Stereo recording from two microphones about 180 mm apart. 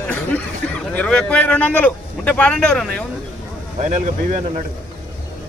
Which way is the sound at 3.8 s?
40° right (ahead or behind).